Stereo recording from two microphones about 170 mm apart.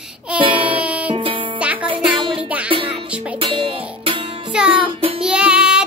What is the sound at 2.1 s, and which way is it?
Music, 30° right (ahead or behind).